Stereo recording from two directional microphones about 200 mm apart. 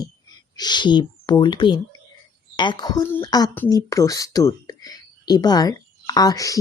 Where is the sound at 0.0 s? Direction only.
20° left (ahead or behind).